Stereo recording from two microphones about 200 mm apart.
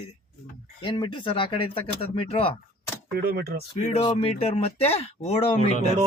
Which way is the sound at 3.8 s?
30° left (ahead or behind).